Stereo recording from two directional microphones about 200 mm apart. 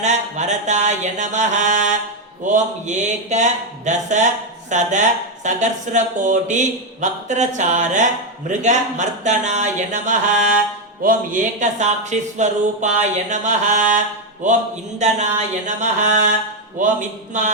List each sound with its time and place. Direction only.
0.0 s speech: 35° right (ahead or behind)